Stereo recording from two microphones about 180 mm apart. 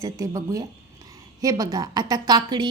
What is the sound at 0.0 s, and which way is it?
A woman's voice, 20° right (ahead or behind).